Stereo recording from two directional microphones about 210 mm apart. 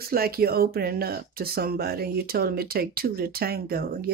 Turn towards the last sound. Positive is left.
turn(degrees=-45)  # may be behind; listen again after turning